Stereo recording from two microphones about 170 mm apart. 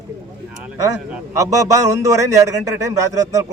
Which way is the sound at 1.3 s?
20° right (ahead or behind).